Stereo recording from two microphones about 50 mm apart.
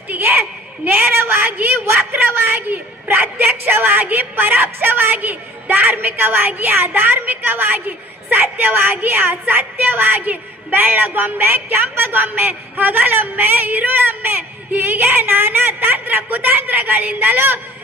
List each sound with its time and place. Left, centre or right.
0.1 s a woman's voice: right